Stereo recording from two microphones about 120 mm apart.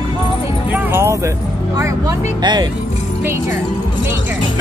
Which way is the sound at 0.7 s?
15° right (ahead or behind).